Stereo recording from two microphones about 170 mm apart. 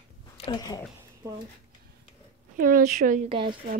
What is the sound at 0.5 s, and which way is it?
Speech, 20° left (ahead or behind).